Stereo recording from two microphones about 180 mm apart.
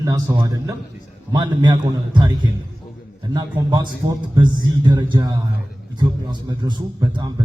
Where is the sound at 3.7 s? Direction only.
25° right (ahead or behind).